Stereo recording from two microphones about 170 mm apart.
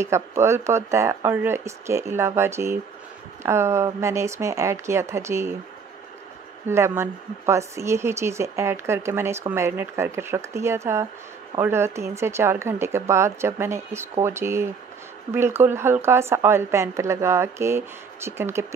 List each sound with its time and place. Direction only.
0.0 s speech: 15° right (ahead or behind)
6.7 s speech: 15° right (ahead or behind)